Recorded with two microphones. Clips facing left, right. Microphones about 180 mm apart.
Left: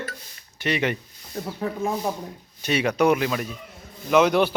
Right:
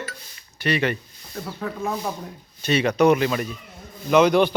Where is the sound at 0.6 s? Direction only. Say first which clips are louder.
Right 2 dB; 20° left (ahead or behind).